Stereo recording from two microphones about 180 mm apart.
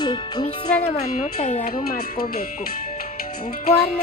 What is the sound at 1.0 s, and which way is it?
Speech, 40° left (ahead or behind).